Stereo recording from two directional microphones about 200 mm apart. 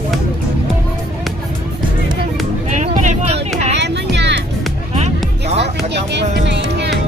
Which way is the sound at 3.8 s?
60° right (ahead or behind).